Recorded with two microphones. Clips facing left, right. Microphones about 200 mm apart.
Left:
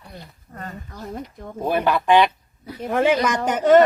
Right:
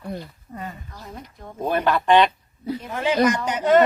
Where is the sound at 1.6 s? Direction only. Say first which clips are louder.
Left 1 dB; 10° left (ahead or behind).